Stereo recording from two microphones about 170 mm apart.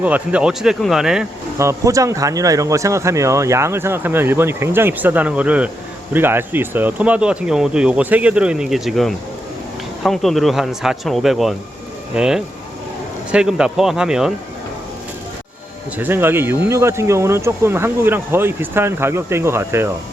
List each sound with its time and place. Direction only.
0.0 s speech: 10° right (ahead or behind)
1.5 s speech: 15° right (ahead or behind)
16.0 s speech: 10° right (ahead or behind)